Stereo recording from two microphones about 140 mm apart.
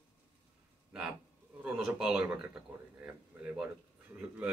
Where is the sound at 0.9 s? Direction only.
5° right (ahead or behind).